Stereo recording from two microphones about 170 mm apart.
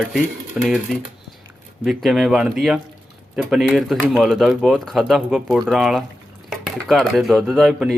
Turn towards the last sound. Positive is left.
turn(degrees=0)  # may be behind; listen again after turning